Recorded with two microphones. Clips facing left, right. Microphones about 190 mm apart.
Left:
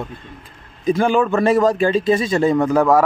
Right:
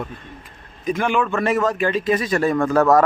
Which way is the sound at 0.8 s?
30° left (ahead or behind).